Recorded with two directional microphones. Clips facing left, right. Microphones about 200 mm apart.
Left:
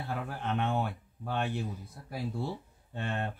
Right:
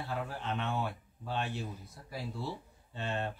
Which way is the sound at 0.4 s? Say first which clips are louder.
Left 6 dB; 55° left (ahead or behind).